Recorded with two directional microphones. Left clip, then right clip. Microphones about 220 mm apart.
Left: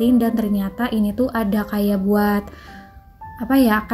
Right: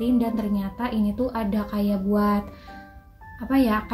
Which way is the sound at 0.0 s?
40° left (ahead or behind).